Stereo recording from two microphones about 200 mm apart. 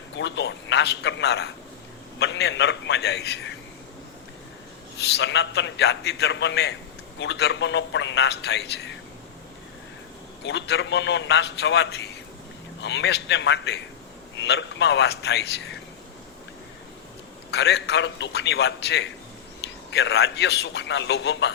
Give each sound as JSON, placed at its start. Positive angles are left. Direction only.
{"t": 0.2, "sound": "a man's voice", "side_deg": 60}
{"t": 5.0, "sound": "a man's voice", "side_deg": 60}
{"t": 10.4, "sound": "a man's voice", "side_deg": 60}
{"t": 17.5, "sound": "a man's voice", "side_deg": 55}